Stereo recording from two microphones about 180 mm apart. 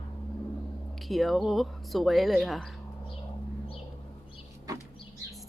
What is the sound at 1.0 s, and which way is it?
Speech, centre (ahead or behind).